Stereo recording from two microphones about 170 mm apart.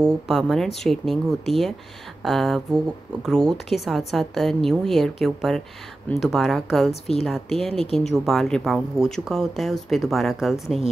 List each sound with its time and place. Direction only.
0.0 s a woman's voice: centre (ahead or behind)
6.9 s a woman's voice: 35° left (ahead or behind)
7.2 s a woman's voice: centre (ahead or behind)